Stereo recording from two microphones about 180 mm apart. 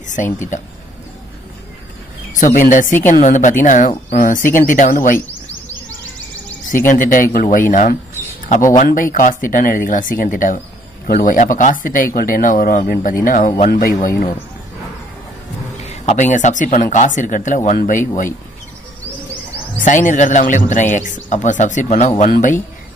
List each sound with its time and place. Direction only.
0.0 s speech: 45° left (ahead or behind)
2.3 s a man's voice: 45° left (ahead or behind)
6.9 s a man's voice: 45° left (ahead or behind)
13.7 s a man's voice: 55° left (ahead or behind)
15.8 s a man's voice: 40° left (ahead or behind)
19.8 s a man's voice: 45° left (ahead or behind)